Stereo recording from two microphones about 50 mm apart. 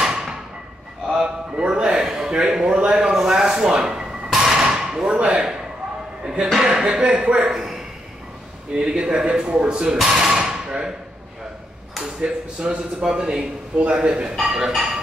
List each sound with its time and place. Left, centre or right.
0.0 s thump: centre
1.0 s a sound: centre
6.5 s speech: centre
7.4 s speech: centre
8.7 s speech: centre
12.0 s speech: centre